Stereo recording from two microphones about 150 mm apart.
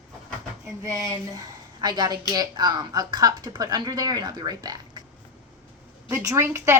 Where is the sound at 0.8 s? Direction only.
20° right (ahead or behind).